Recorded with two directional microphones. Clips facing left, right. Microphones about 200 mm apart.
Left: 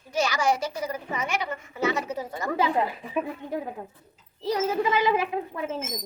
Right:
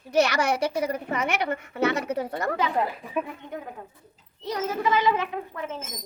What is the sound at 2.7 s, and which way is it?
Speech, centre (ahead or behind).